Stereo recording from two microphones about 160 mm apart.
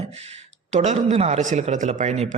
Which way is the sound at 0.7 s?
45° right (ahead or behind).